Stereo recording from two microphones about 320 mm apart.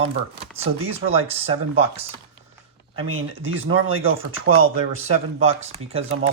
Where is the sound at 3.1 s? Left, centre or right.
Right.